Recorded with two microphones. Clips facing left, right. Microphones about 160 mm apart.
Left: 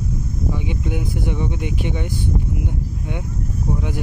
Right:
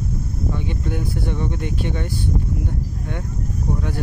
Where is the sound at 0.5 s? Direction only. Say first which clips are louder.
Left 1 dB; 15° left (ahead or behind).